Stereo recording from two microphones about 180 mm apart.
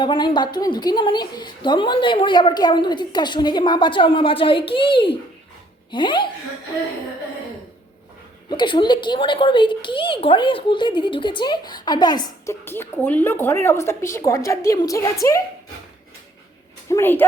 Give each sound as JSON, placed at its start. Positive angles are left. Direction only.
{"t": 0.0, "sound": "a woman's voice", "side_deg": 25}
{"t": 8.4, "sound": "a woman's voice", "side_deg": 25}
{"t": 12.6, "sound": "speech", "side_deg": 10}
{"t": 16.9, "sound": "speech", "side_deg": 10}